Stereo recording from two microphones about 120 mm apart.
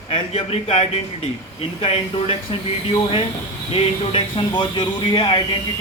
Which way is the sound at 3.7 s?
50° left (ahead or behind).